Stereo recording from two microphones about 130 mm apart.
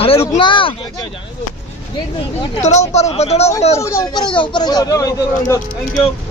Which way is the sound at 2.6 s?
60° left (ahead or behind).